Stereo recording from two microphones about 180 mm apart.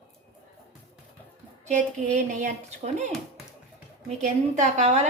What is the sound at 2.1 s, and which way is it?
A woman's voice, 45° right (ahead or behind).